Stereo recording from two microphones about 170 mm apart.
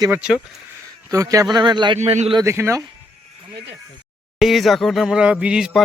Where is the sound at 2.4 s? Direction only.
15° right (ahead or behind).